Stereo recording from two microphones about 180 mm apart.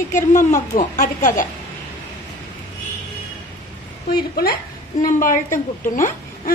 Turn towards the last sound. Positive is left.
turn(degrees=50)  # may be behind; listen again after turning